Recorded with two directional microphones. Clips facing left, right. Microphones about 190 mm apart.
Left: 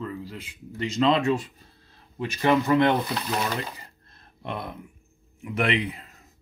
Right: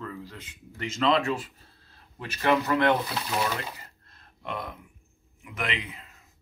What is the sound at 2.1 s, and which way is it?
Speech, 15° left (ahead or behind).